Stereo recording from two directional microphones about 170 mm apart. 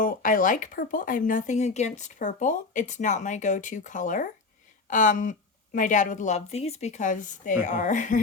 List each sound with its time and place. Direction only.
0.0 s speech: 55° left (ahead or behind)